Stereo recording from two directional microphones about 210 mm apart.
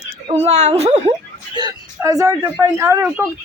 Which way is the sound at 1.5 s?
20° right (ahead or behind).